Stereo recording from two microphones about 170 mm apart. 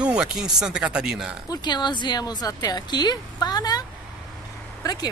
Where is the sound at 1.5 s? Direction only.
25° left (ahead or behind).